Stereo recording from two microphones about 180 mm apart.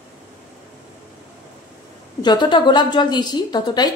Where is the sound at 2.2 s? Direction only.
25° left (ahead or behind).